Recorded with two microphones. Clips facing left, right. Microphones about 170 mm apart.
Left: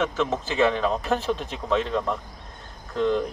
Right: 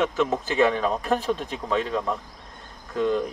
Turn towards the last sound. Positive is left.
turn(degrees=-5)  # may be behind; listen again after turning